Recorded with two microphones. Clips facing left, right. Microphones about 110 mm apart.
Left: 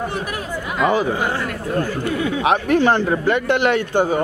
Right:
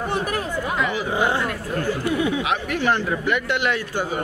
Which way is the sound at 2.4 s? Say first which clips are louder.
Left 7 dB; 35° left (ahead or behind).